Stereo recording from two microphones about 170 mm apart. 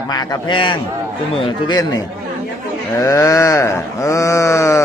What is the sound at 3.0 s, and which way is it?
Sheep, 15° left (ahead or behind).